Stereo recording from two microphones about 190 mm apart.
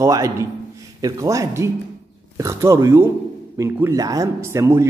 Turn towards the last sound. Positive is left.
turn(degrees=-15)  # may be behind; listen again after turning